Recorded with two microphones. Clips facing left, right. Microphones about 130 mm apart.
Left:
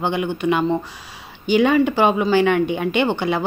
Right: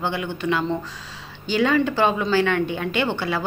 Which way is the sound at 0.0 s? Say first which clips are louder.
Left 5 dB; 20° left (ahead or behind).